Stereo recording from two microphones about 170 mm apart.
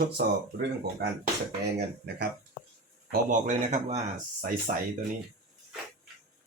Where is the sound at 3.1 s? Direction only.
50° right (ahead or behind).